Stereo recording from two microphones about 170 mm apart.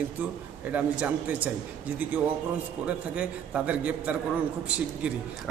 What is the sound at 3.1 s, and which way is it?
A man's voice, 5° right (ahead or behind).